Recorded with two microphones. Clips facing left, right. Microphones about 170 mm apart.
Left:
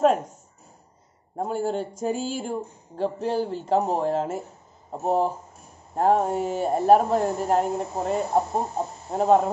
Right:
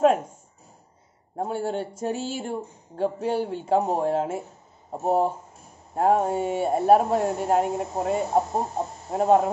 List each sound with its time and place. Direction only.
1.3 s speech: centre (ahead or behind)